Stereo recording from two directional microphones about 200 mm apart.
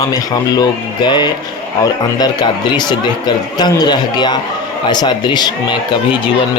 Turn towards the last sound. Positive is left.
turn(degrees=20)  # may be behind; listen again after turning